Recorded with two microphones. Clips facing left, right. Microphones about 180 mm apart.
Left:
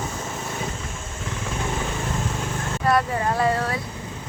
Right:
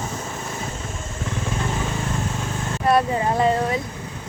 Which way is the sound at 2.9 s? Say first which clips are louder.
Right 3 dB; 20° right (ahead or behind).